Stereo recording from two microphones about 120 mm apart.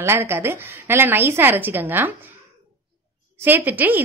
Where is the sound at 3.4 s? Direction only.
15° right (ahead or behind).